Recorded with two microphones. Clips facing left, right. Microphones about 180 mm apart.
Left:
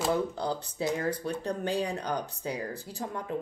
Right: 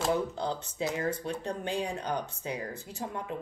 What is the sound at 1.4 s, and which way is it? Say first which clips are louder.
Speech: left 3 dB; 35° left (ahead or behind).